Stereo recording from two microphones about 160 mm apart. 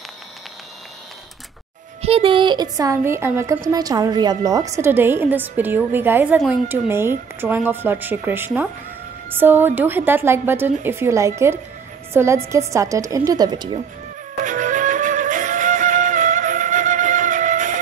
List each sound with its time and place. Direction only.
2.0 s a woman's voice: 40° right (ahead or behind)
14.4 s music: 55° right (ahead or behind)